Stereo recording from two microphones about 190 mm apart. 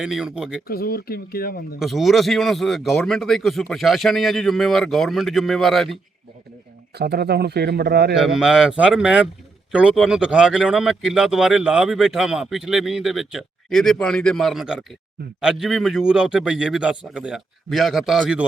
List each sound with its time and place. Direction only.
0.0 s speech: 5° right (ahead or behind)
0.7 s speech: 50° left (ahead or behind)
1.8 s speech: centre (ahead or behind)
6.9 s speech: 60° right (ahead or behind)
8.1 s speech: centre (ahead or behind)